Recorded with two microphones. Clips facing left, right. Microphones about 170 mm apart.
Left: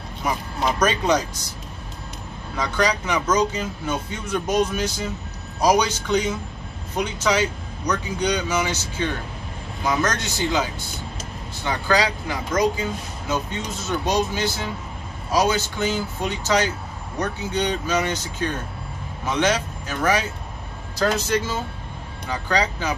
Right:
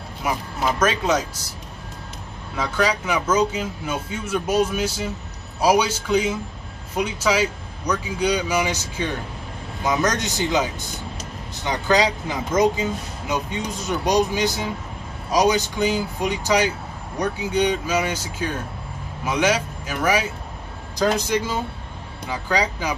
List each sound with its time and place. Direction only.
0.2 s speech: 5° right (ahead or behind)
2.5 s speech: 5° right (ahead or behind)